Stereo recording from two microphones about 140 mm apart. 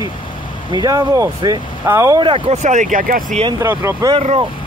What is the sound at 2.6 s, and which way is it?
Speech, 65° right (ahead or behind).